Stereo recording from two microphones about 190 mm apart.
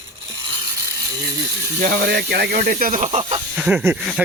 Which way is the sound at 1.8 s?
55° right (ahead or behind).